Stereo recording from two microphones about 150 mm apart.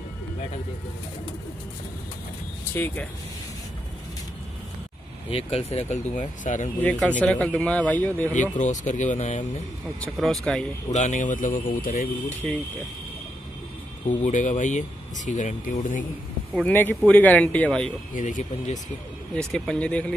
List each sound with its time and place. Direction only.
2.7 s speech: 15° left (ahead or behind)
5.3 s speech: 40° left (ahead or behind)
6.1 s speech: 55° left (ahead or behind)
6.8 s speech: 10° left (ahead or behind)
8.4 s speech: 55° left (ahead or behind)
10.1 s speech: centre (ahead or behind)
10.9 s speech: 55° left (ahead or behind)
14.0 s speech: 55° left (ahead or behind)
16.6 s speech: 10° left (ahead or behind)
18.1 s speech: 55° left (ahead or behind)
19.3 s speech: 5° left (ahead or behind)